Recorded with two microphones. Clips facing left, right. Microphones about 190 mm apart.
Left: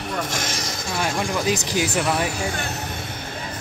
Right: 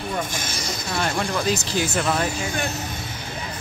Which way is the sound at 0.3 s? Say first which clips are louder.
Left 3 dB; 90° left.